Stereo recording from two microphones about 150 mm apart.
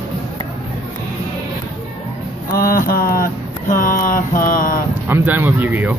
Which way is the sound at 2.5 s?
75° left (ahead or behind).